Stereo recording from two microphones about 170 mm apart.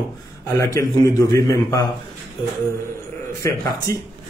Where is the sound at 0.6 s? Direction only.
20° left (ahead or behind).